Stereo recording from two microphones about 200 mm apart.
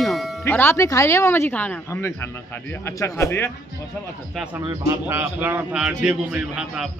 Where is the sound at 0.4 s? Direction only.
10° left (ahead or behind).